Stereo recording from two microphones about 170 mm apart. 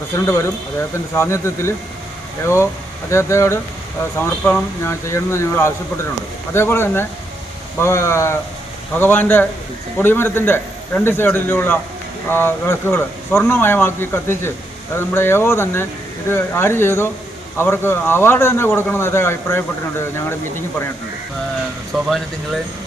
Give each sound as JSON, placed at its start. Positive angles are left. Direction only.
{"t": 0.3, "sound": "speech", "side_deg": 15}
{"t": 21.9, "sound": "speech", "side_deg": 0}